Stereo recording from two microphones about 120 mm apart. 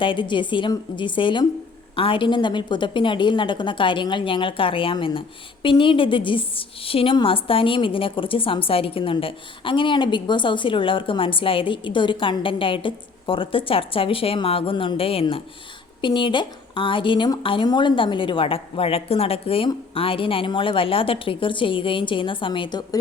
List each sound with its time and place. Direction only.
0.0 s a woman's voice: 45° left (ahead or behind)